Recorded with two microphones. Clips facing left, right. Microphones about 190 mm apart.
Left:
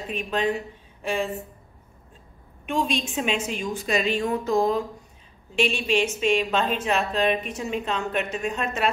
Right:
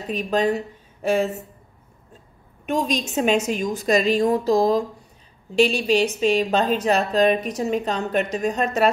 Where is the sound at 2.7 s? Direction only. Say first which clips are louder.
Right 3 dB; 40° right (ahead or behind).